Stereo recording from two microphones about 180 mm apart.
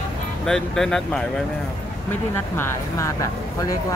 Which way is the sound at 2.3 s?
15° left (ahead or behind).